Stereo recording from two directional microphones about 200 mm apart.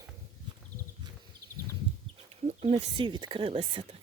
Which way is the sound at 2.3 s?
30° right (ahead or behind).